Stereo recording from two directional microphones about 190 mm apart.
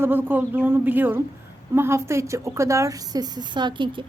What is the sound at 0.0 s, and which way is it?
A woman's voice, 10° right (ahead or behind).